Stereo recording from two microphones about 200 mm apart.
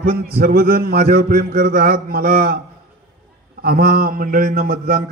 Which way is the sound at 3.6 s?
50° right (ahead or behind).